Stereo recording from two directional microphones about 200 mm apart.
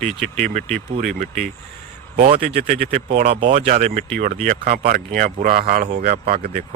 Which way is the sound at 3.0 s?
30° right (ahead or behind).